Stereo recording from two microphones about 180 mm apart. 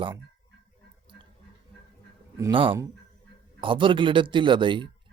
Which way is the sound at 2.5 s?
30° right (ahead or behind).